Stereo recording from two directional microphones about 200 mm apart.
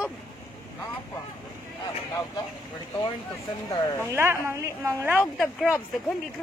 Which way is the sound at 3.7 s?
15° left (ahead or behind).